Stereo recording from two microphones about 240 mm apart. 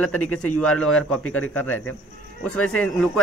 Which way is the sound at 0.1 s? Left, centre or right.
Left.